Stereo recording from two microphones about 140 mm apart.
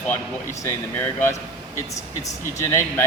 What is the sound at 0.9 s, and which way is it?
Speech, 15° left (ahead or behind).